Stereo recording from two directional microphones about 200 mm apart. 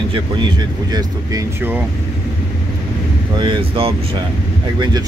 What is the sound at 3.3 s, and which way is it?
Speech, 25° right (ahead or behind).